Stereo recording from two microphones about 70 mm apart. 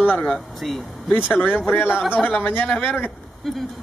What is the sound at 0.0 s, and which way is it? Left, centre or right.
Speech, left.